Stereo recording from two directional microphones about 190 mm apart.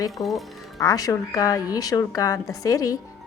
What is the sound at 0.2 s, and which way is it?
Speech, centre (ahead or behind).